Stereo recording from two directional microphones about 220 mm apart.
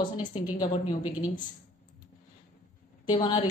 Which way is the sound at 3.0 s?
25° left (ahead or behind).